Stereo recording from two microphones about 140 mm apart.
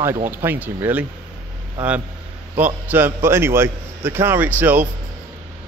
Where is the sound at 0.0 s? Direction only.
15° right (ahead or behind).